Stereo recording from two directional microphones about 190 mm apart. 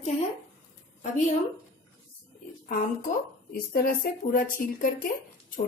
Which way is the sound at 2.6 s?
45° left (ahead or behind).